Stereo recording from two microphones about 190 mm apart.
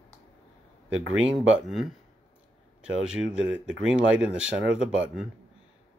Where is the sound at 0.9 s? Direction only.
90° right.